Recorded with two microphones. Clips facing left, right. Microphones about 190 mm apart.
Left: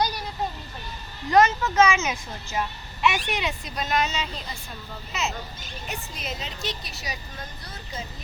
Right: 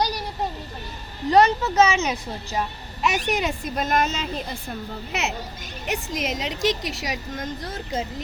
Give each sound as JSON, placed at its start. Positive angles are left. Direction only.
{"t": 1.3, "sound": "a woman's voice", "side_deg": -35}
{"t": 5.8, "sound": "a woman's voice", "side_deg": -85}